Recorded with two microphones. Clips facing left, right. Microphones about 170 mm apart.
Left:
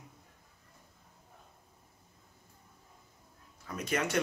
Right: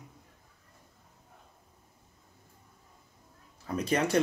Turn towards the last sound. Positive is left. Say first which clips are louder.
# right 5 dB
turn(degrees=-35)  # may be behind; listen again after turning